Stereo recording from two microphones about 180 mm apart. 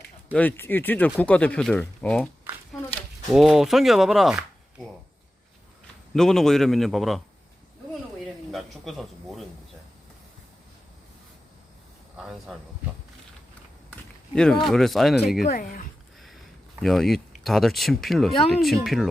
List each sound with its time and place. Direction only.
0.3 s speech: 10° left (ahead or behind)
3.3 s speech: centre (ahead or behind)
6.1 s speech: 5° left (ahead or behind)
8.5 s speech: centre (ahead or behind)
12.1 s speech: 5° right (ahead or behind)
13.9 s speech: 5° left (ahead or behind)
15.4 s speech: 50° left (ahead or behind)
16.8 s speech: centre (ahead or behind)